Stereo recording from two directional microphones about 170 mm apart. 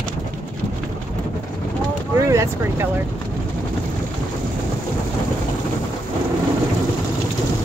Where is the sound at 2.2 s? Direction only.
15° right (ahead or behind).